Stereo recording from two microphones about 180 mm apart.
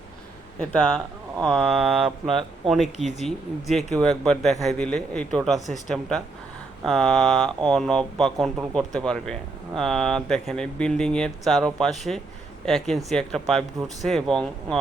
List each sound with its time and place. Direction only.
0.6 s speech: 5° left (ahead or behind)
2.0 s speech: 30° right (ahead or behind)
2.6 s speech: centre (ahead or behind)